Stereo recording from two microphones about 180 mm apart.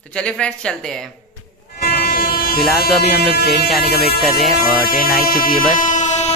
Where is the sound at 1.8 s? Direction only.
55° left (ahead or behind).